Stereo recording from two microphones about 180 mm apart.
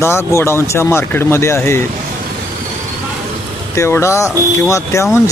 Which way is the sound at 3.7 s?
15° left (ahead or behind).